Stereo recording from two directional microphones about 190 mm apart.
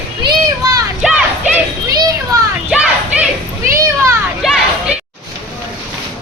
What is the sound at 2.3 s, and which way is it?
Children playing, 15° right (ahead or behind).